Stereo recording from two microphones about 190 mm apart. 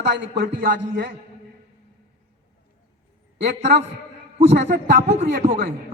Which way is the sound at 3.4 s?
60° right (ahead or behind).